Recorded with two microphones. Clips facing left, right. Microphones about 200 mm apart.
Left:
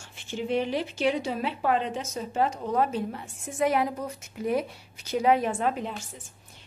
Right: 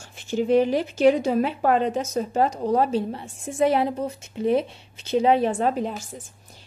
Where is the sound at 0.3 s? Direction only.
40° right (ahead or behind).